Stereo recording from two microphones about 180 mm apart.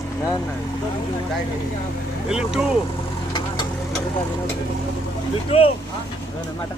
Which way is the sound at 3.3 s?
25° left (ahead or behind).